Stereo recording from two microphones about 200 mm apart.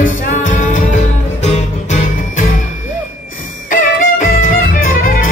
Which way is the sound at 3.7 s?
45° left (ahead or behind).